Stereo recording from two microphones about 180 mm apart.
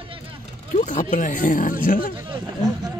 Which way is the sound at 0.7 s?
45° left (ahead or behind).